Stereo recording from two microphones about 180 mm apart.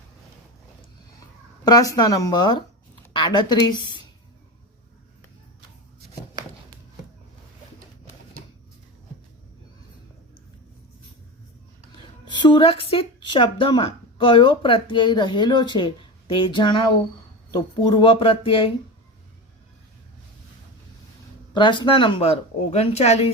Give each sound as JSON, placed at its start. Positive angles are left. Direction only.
{"t": 1.6, "sound": "speech", "side_deg": 20}
{"t": 12.2, "sound": "speech", "side_deg": 25}
{"t": 21.5, "sound": "speech", "side_deg": 25}